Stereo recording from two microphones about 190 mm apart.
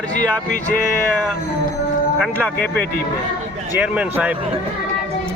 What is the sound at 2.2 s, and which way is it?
Speech, 5° left (ahead or behind).